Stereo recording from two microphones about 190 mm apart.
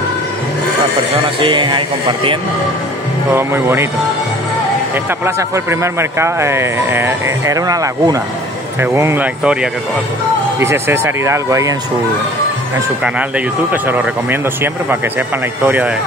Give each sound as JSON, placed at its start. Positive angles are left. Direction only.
{"t": 1.4, "sound": "speech", "side_deg": -25}
{"t": 3.3, "sound": "speech", "side_deg": -15}
{"t": 4.9, "sound": "speech", "side_deg": -15}
{"t": 13.8, "sound": "speech", "side_deg": -5}